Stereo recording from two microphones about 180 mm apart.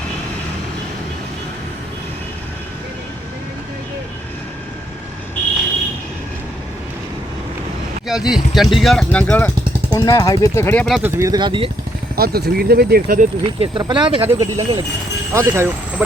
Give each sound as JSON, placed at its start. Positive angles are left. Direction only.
{"t": 8.0, "sound": "speech", "side_deg": -5}
{"t": 10.8, "sound": "speech", "side_deg": 0}
{"t": 11.1, "sound": "speech", "side_deg": -20}
{"t": 12.1, "sound": "speech", "side_deg": -60}
{"t": 13.4, "sound": "speech", "side_deg": -30}
{"t": 14.3, "sound": "speech", "side_deg": -20}